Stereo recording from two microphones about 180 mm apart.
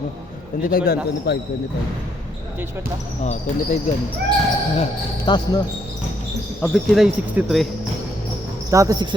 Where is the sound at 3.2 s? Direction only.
40° left (ahead or behind).